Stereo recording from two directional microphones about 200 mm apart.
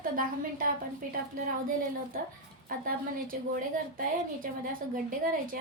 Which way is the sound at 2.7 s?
45° right (ahead or behind).